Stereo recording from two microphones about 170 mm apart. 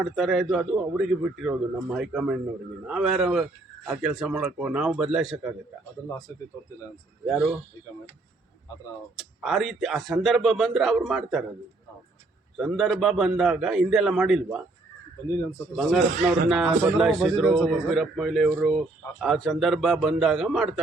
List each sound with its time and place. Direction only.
0.0 s a man's voice: centre (ahead or behind)
6.1 s speech: 20° left (ahead or behind)
7.3 s a man's voice: centre (ahead or behind)
9.1 s a man's voice: centre (ahead or behind)
12.5 s a man's voice: centre (ahead or behind)
15.7 s a man's voice: centre (ahead or behind)